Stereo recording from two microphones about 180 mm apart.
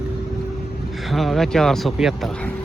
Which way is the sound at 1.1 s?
Centre (ahead or behind).